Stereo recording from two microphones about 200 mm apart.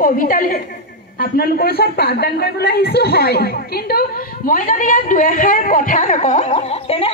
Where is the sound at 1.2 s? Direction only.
50° left (ahead or behind).